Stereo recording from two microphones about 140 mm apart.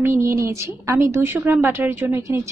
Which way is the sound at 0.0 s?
20° right (ahead or behind).